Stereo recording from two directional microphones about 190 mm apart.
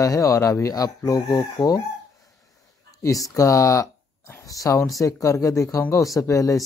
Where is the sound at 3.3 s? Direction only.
15° left (ahead or behind).